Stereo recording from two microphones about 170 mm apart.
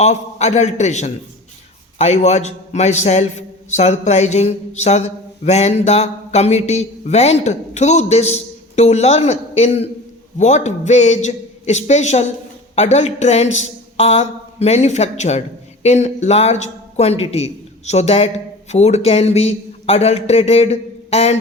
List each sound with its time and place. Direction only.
0.0 s a man's voice: 40° left (ahead or behind)